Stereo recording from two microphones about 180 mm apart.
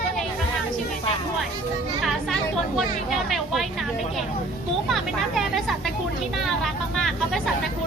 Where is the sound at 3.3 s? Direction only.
Centre (ahead or behind).